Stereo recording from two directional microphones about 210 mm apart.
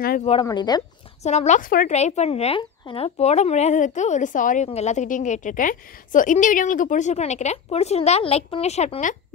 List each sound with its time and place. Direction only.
0.2 s speech: 30° left (ahead or behind)
1.2 s a woman's voice: 30° left (ahead or behind)